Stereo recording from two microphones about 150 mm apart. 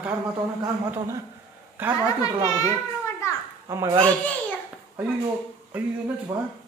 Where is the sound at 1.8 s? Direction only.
15° right (ahead or behind).